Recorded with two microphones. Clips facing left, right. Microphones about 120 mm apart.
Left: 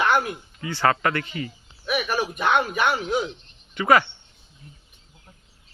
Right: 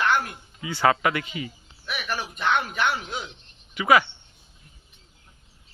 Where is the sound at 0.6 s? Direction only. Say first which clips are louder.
Even; 10° right (ahead or behind).